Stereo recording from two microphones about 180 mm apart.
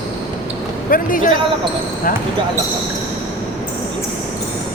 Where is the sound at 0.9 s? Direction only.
50° left (ahead or behind).